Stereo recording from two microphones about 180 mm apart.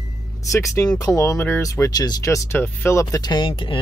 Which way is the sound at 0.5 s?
15° left (ahead or behind).